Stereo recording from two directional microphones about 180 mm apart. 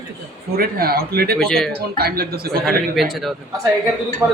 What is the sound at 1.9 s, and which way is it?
Speech, 55° right (ahead or behind).